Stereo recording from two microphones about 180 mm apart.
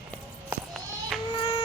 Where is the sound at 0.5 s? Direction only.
Centre (ahead or behind).